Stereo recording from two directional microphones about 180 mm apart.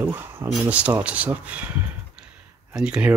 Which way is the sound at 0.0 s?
15° right (ahead or behind).